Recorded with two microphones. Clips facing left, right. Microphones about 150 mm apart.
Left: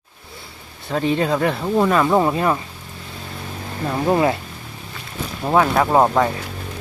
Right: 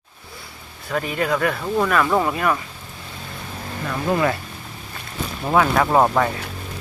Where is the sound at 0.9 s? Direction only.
25° left (ahead or behind).